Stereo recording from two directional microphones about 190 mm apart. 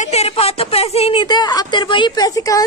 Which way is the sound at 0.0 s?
35° left (ahead or behind).